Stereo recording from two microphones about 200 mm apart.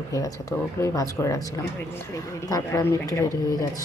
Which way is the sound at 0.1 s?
15° left (ahead or behind).